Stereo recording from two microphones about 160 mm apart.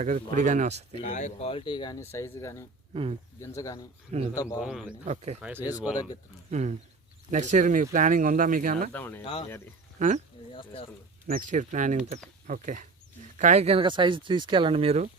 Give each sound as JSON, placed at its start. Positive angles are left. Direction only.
{"t": 0.3, "sound": "speech", "side_deg": -50}
{"t": 1.1, "sound": "speech", "side_deg": 45}
{"t": 2.9, "sound": "speech", "side_deg": -35}
{"t": 3.4, "sound": "speech", "side_deg": 20}
{"t": 4.6, "sound": "speech", "side_deg": -5}
{"t": 5.0, "sound": "speech", "side_deg": -45}
{"t": 5.4, "sound": "speech", "side_deg": -10}
{"t": 6.5, "sound": "speech", "side_deg": -45}
{"t": 8.9, "sound": "speech", "side_deg": 10}
{"t": 9.2, "sound": "speech", "side_deg": 35}
{"t": 10.0, "sound": "speech", "side_deg": -50}
{"t": 10.5, "sound": "speech", "side_deg": 35}
{"t": 11.3, "sound": "speech", "side_deg": -60}